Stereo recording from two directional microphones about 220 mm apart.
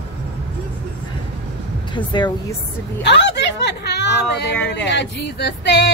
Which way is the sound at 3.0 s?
50° left (ahead or behind).